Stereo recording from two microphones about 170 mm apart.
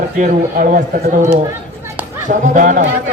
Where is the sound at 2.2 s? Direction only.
50° right (ahead or behind).